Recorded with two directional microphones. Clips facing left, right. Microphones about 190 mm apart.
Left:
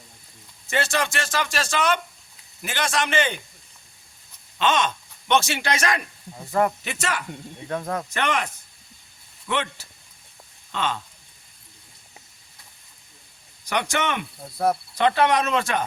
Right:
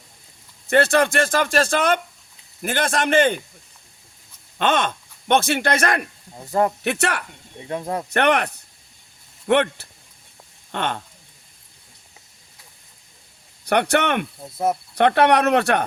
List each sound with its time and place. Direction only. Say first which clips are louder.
0.7 s speech: right 8 dB; 55° right (ahead or behind)
4.5 s speech: right 2 dB; 55° right (ahead or behind)
6.5 s speech: right 2 dB; 25° right (ahead or behind)
6.8 s speech: right 6 dB; 65° right (ahead or behind)
7.7 s speech: right 2 dB; 20° right (ahead or behind)
8.1 s speech: right 10 dB; 65° right (ahead or behind)
13.7 s speech: right 6 dB; 60° right (ahead or behind)
14.4 s speech: left 2 dB; 20° right (ahead or behind)
14.9 s speech: right 6 dB; 60° right (ahead or behind)